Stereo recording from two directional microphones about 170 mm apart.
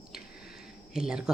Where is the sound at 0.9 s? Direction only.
5° right (ahead or behind).